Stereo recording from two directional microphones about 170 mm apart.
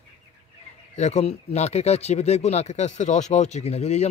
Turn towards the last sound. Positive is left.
turn(degrees=40)  # may be behind; listen again after turning